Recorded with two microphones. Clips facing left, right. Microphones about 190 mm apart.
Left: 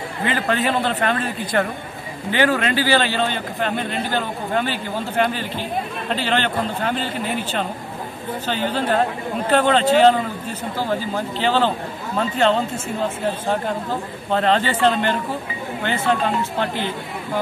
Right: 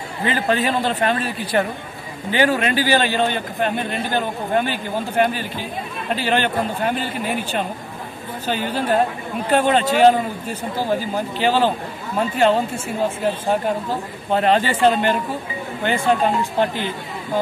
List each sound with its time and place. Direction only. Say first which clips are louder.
0.5 s a man's voice: right 1 dB; 15° right (ahead or behind)